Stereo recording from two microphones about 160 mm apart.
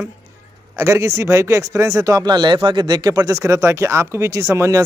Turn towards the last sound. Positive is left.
turn(degrees=-20)  # may be behind; listen again after turning